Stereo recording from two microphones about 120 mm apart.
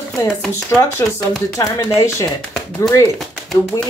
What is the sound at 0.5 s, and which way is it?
Speech, 25° left (ahead or behind).